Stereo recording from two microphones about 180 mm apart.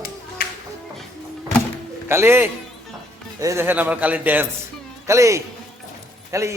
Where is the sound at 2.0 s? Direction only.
15° right (ahead or behind).